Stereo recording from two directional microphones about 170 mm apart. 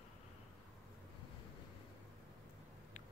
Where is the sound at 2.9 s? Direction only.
45° left (ahead or behind).